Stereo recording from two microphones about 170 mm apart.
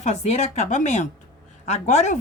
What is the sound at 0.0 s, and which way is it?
Speech, 40° left (ahead or behind).